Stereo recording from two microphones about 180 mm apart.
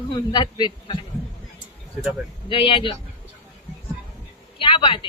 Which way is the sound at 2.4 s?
30° left (ahead or behind).